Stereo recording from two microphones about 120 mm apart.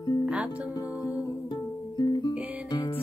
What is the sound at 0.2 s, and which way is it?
Music, 10° right (ahead or behind).